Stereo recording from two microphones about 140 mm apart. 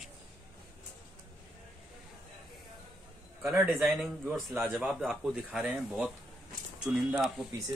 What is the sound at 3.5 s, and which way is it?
A man's voice, centre (ahead or behind).